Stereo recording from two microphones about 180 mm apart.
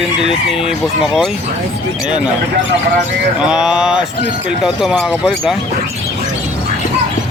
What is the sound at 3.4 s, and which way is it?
Speech, 5° right (ahead or behind).